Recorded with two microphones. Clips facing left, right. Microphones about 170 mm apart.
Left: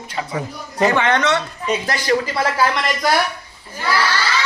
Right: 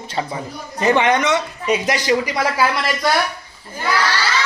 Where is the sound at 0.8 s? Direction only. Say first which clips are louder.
Right 1 dB; 15° right (ahead or behind).